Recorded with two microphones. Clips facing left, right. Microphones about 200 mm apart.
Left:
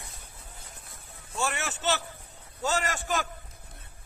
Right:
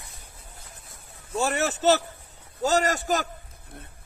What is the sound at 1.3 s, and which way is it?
A man's voice, 40° right (ahead or behind).